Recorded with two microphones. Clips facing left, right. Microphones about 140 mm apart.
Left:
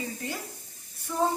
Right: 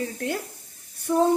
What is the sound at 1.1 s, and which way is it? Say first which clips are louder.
Speech: right 7 dB; 60° right (ahead or behind).